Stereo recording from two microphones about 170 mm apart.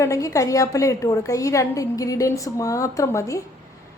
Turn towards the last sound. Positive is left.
turn(degrees=20)  # may be behind; listen again after turning